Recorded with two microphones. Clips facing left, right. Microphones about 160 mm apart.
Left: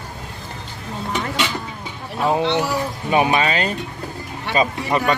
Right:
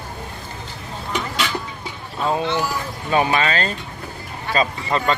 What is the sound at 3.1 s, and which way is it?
Speech, 15° left (ahead or behind).